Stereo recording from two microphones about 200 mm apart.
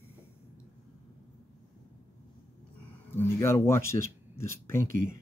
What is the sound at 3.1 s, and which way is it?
Speech, 10° left (ahead or behind).